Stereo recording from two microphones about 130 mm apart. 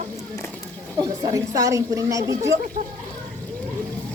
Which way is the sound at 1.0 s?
30° right (ahead or behind).